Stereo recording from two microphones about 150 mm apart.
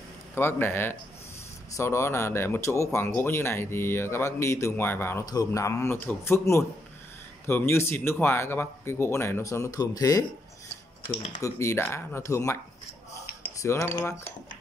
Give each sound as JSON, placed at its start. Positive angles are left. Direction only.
{"t": 0.3, "sound": "speech", "side_deg": 15}
{"t": 11.4, "sound": "speech", "side_deg": 20}
{"t": 13.6, "sound": "speech", "side_deg": 20}